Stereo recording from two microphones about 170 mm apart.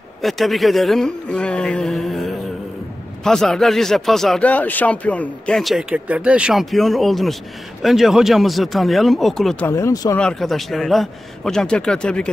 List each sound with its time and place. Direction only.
0.2 s speech: centre (ahead or behind)
9.7 s speech: 15° left (ahead or behind)
10.2 s speech: centre (ahead or behind)